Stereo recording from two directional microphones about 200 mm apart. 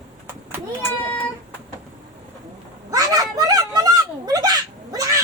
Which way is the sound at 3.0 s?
15° right (ahead or behind).